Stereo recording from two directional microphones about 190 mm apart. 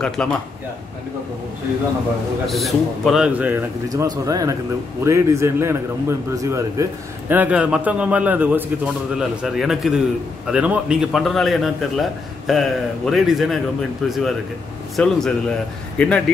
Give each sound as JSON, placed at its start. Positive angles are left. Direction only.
{"t": 0.0, "sound": "a man's voice", "side_deg": 5}
{"t": 2.4, "sound": "a man's voice", "side_deg": 0}